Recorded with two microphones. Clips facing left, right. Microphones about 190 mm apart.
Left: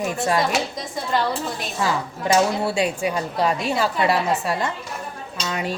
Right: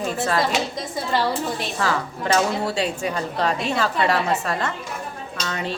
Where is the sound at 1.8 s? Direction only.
10° left (ahead or behind).